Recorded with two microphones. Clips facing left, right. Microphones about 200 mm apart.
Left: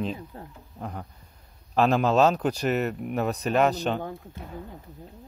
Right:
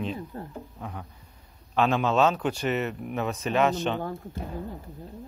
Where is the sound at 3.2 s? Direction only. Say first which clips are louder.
Left 2 dB; 35° left (ahead or behind).